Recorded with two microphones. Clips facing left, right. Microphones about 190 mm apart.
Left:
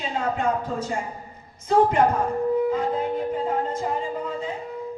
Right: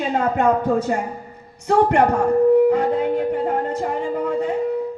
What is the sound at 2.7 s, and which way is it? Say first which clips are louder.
Music: right 6 dB; 70° right (ahead or behind).